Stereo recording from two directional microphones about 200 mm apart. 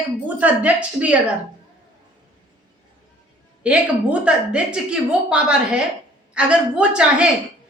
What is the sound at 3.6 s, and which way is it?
A woman's voice, 5° right (ahead or behind).